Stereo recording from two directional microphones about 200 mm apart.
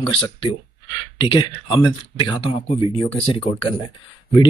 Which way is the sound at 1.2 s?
25° left (ahead or behind).